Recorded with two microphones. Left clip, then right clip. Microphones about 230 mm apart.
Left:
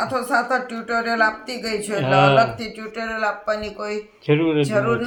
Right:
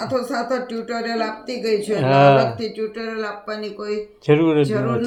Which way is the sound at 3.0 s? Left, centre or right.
Left.